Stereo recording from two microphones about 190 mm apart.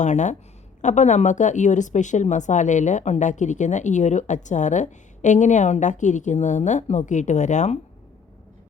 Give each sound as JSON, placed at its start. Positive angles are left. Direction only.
{"t": 0.0, "sound": "speech", "side_deg": 40}